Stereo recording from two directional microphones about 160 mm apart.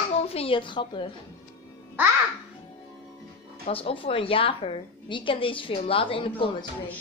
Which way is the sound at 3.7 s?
35° left (ahead or behind).